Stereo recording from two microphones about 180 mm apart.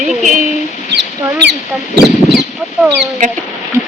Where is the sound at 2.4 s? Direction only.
5° right (ahead or behind).